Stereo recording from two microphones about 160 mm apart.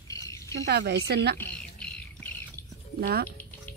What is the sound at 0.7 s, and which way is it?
Speech, 90° right.